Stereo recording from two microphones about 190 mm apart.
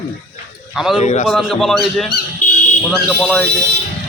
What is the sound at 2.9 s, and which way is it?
Speech, 5° left (ahead or behind).